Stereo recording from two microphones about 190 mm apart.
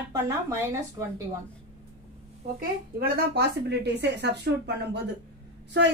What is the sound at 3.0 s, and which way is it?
Speech, 55° right (ahead or behind).